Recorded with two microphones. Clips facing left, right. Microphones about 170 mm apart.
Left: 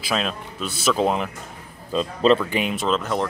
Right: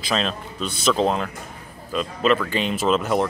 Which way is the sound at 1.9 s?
30° left (ahead or behind).